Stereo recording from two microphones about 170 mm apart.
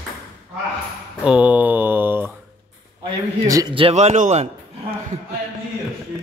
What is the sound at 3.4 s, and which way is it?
Speech, 20° right (ahead or behind).